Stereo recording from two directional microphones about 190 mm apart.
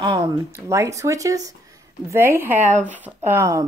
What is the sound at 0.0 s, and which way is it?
Speech, 20° right (ahead or behind).